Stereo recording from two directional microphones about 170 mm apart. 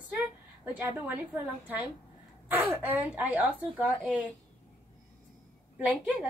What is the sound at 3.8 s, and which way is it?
Speech, 10° left (ahead or behind).